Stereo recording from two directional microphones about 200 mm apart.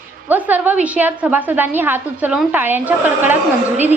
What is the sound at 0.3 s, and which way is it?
A woman's voice, 10° right (ahead or behind).